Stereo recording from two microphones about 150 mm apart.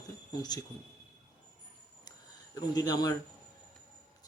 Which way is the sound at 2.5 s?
25° left (ahead or behind).